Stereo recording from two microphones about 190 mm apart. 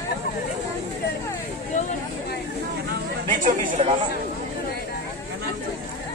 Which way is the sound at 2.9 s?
45° right (ahead or behind).